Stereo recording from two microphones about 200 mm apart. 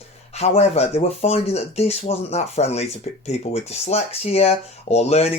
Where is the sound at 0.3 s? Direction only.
30° left (ahead or behind).